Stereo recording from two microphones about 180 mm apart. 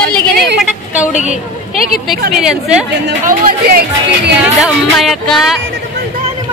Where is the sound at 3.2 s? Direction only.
50° right (ahead or behind).